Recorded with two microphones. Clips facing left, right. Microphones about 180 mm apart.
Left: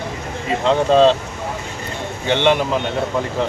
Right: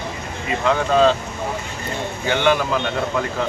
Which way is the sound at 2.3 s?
25° left (ahead or behind).